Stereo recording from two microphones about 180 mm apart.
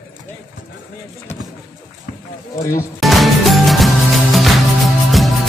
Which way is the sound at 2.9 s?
Centre (ahead or behind).